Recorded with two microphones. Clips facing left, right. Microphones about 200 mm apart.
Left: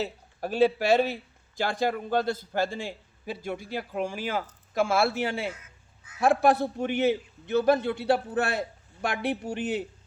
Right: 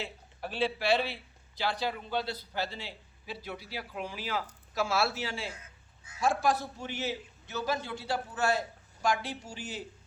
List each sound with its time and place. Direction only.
0.0 s a man's voice: 45° left (ahead or behind); by 9.8 s 60° left (ahead or behind)